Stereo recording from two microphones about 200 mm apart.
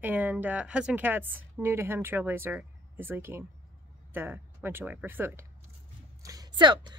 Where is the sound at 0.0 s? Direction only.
10° right (ahead or behind).